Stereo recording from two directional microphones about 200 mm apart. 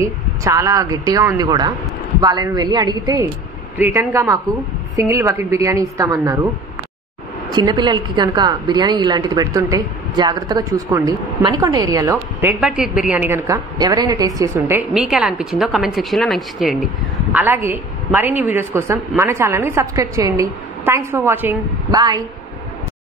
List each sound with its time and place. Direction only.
0.0 s a woman's voice: 15° right (ahead or behind)
7.5 s a woman's voice: 20° right (ahead or behind)